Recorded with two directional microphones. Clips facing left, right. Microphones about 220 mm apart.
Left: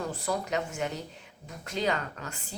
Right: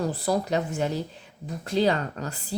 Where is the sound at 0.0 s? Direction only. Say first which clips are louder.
Right 6 dB; 35° right (ahead or behind).